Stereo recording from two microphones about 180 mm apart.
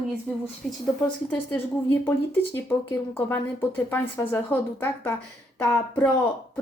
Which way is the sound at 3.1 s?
10° left (ahead or behind).